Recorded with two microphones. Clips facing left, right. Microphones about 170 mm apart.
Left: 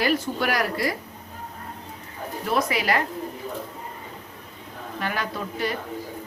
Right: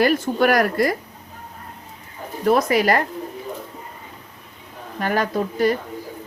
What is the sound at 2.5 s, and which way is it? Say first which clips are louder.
Speech: right 7 dB; 45° right (ahead or behind).